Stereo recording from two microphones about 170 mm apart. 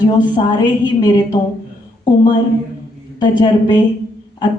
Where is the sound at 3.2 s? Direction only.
25° left (ahead or behind).